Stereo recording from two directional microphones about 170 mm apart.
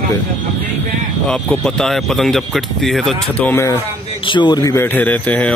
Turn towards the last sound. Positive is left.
turn(degrees=10)  # may be behind; listen again after turning